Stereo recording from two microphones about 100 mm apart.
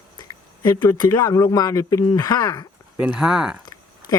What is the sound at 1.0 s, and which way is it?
Speech, 35° left (ahead or behind).